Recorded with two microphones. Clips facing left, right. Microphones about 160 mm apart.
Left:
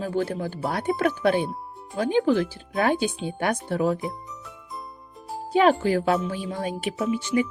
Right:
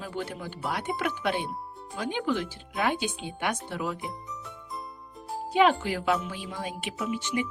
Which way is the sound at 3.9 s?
Centre (ahead or behind).